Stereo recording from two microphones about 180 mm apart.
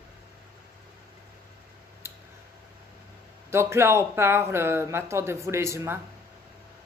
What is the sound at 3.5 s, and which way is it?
A woman's voice, 15° right (ahead or behind).